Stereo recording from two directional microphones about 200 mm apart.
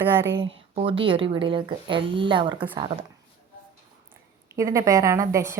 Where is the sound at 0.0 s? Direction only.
10° right (ahead or behind).